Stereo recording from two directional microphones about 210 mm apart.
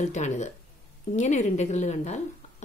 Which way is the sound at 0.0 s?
35° left (ahead or behind).